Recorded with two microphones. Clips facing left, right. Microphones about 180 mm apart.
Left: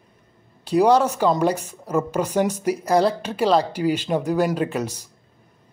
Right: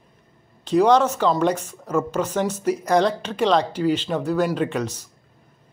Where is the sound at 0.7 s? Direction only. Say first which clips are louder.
Even; 10° left (ahead or behind).